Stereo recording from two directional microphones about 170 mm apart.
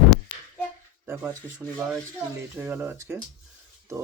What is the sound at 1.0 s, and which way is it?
Speech, 15° right (ahead or behind).